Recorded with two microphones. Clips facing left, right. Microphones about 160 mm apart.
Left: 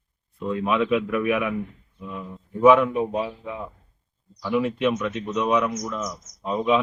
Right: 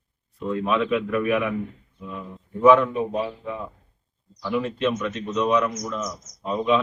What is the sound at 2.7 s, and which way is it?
A man's voice, 15° left (ahead or behind).